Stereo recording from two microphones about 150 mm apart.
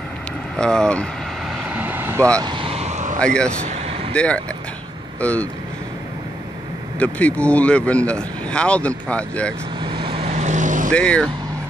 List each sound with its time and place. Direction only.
0.6 s speech: 5° left (ahead or behind)
1.6 s vehicle: 10° right (ahead or behind)
2.4 s vehicle: 35° right (ahead or behind); by 3.2 s 50° right (ahead or behind)
3.2 s speech: 5° left (ahead or behind)
3.6 s vehicle: 50° right (ahead or behind)
4.1 s speech: 10° left (ahead or behind)
7.0 s speech: 10° left (ahead or behind)
9.8 s vehicle: 30° right (ahead or behind); by 10.9 s 60° right (ahead or behind)
10.9 s speech: 5° left (ahead or behind)